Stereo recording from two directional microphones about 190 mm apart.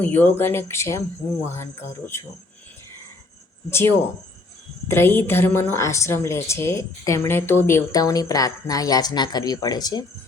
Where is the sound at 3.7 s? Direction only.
15° left (ahead or behind).